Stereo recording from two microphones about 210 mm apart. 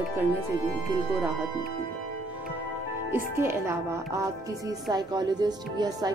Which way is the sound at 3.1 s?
10° right (ahead or behind).